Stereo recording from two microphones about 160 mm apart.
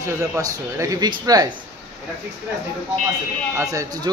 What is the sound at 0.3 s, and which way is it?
A man's voice, 20° right (ahead or behind).